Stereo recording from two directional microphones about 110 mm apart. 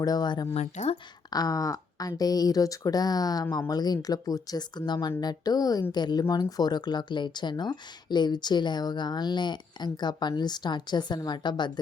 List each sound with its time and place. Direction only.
0.0 s speech: 35° left (ahead or behind)
0.5 s a woman's voice: 75° left (ahead or behind)
1.3 s speech: 35° left (ahead or behind)